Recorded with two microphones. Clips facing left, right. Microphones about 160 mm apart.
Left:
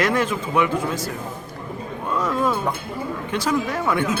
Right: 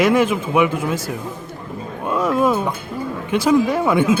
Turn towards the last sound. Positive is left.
turn(degrees=-10)  # may be behind; listen again after turning